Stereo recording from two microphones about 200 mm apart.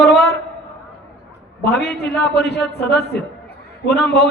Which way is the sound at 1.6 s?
55° left (ahead or behind).